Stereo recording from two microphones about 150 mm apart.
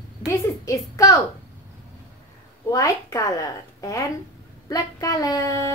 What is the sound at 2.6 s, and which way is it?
A woman's voice, 20° left (ahead or behind).